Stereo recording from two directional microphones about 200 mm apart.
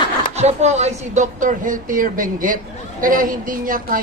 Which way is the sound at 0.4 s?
35° right (ahead or behind).